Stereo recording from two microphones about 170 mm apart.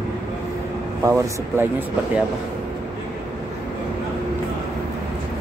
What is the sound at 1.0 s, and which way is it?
Speech, 20° right (ahead or behind).